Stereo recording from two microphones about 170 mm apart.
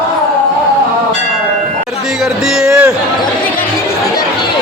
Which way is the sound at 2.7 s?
15° right (ahead or behind).